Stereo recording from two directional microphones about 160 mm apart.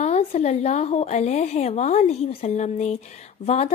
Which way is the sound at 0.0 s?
40° left (ahead or behind).